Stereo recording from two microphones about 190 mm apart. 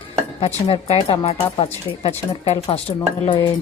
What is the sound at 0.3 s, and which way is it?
A woman's voice, 30° left (ahead or behind).